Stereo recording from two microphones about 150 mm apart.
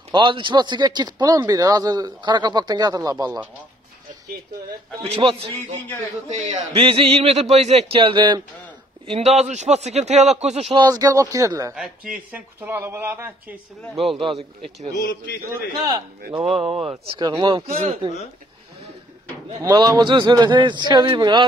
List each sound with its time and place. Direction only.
0.1 s speech: 30° right (ahead or behind)
5.0 s a man's voice: 40° right (ahead or behind)
9.0 s a man's voice: 45° right (ahead or behind)
10.8 s speech: 25° right (ahead or behind)
11.7 s speech: 5° right (ahead or behind)
15.5 s speech: 25° right (ahead or behind)
16.5 s a man's voice: 40° right (ahead or behind)
17.2 s speech: 25° right (ahead or behind)
17.7 s a man's voice: 45° right (ahead or behind)
19.6 s speech: 25° right (ahead or behind)